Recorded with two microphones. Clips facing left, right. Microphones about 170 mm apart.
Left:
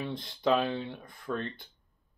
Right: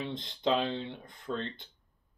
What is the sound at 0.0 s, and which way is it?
Speech, 20° right (ahead or behind).